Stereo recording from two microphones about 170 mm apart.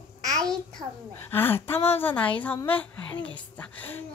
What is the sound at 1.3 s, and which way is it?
A woman's voice, 10° left (ahead or behind).